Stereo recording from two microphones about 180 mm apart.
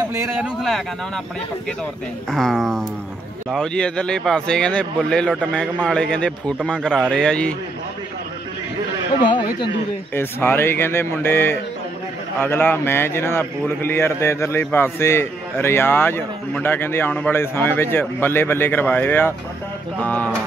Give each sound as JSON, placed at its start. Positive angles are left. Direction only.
{"t": 0.3, "sound": "speech", "side_deg": -5}
{"t": 2.3, "sound": "speech", "side_deg": 0}
{"t": 9.2, "sound": "speech", "side_deg": 25}
{"t": 10.1, "sound": "a man's voice", "side_deg": 10}